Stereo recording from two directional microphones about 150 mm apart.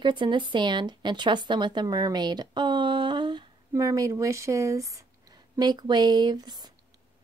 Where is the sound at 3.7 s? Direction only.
20° right (ahead or behind).